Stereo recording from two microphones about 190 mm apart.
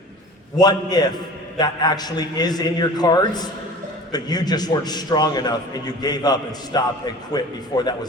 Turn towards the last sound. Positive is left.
turn(degrees=20)  # may be behind; listen again after turning